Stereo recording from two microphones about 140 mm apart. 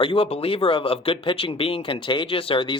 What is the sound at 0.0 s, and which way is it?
Speech, 40° left (ahead or behind).